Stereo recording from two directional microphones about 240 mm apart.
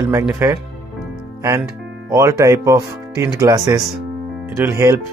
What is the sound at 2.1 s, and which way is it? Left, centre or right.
Speech, centre.